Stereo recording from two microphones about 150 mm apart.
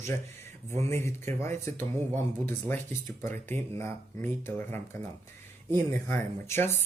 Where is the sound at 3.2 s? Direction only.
15° left (ahead or behind).